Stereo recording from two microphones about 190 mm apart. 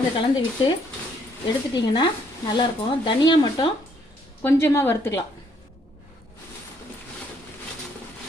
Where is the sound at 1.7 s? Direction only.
25° left (ahead or behind).